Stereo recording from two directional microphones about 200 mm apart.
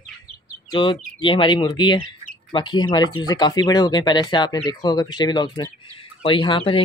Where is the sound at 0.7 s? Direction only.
25° left (ahead or behind).